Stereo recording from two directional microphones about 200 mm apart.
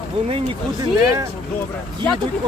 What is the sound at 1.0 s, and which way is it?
Speech, 15° right (ahead or behind).